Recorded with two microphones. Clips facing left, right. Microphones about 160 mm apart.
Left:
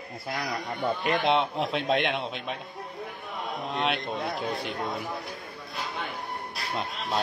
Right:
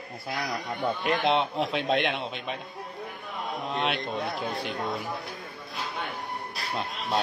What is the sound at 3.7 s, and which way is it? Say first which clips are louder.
Speech: even; centre (ahead or behind).